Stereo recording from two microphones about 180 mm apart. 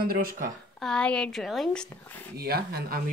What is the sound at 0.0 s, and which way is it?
Speech, 55° right (ahead or behind).